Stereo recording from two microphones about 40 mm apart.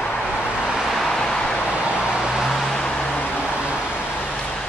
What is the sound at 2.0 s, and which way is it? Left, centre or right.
Vehicle, centre.